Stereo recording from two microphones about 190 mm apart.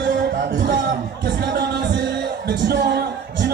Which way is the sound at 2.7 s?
60° right (ahead or behind).